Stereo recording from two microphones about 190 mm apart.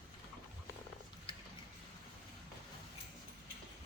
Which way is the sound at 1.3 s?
30° left (ahead or behind).